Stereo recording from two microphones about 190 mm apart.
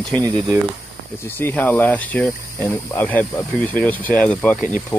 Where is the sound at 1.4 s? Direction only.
10° left (ahead or behind).